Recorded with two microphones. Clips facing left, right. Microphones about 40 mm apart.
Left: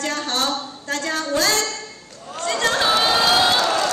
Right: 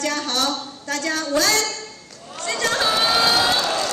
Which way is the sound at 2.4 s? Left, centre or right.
Left.